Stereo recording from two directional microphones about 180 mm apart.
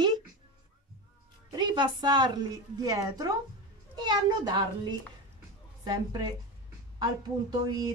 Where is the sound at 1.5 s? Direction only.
25° right (ahead or behind).